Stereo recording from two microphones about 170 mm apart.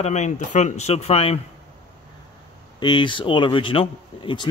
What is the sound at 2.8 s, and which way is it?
Speech, 25° left (ahead or behind).